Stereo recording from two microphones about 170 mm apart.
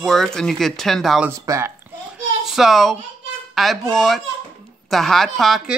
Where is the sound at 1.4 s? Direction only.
20° right (ahead or behind).